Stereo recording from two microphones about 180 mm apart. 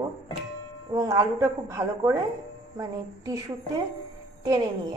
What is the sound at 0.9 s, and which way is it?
A woman's voice, 20° right (ahead or behind).